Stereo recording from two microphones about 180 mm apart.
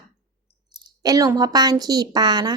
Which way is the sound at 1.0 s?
20° right (ahead or behind).